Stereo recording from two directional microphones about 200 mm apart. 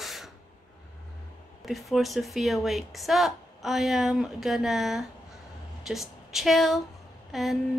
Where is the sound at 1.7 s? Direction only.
Centre (ahead or behind).